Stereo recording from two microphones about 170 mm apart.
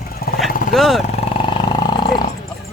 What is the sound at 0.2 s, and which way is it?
Vehicle, 65° left (ahead or behind).